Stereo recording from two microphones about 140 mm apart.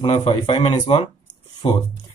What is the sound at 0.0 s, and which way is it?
Speech, 45° left (ahead or behind).